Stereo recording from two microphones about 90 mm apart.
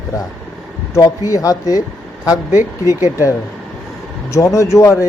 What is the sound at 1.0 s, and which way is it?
Speech, 40° left (ahead or behind).